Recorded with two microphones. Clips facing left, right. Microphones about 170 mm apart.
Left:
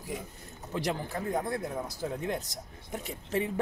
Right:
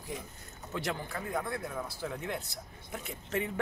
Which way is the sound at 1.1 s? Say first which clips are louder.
Left 4 dB; 35° left (ahead or behind).